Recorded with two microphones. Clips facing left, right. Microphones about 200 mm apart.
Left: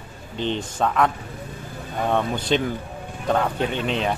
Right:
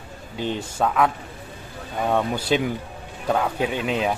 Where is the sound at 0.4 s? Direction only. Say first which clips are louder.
Even; 10° right (ahead or behind).